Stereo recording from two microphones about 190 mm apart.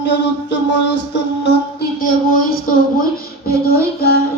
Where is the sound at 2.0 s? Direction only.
45° left (ahead or behind).